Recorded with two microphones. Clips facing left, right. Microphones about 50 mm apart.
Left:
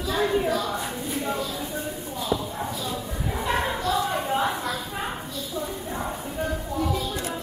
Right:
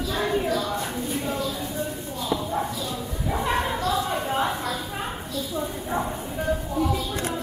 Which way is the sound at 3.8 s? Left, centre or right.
Centre.